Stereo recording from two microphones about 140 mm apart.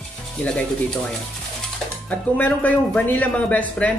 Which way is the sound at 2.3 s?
10° left (ahead or behind).